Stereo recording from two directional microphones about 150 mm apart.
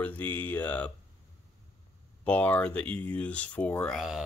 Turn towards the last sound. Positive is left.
turn(degrees=0)  # may be behind; listen again after turning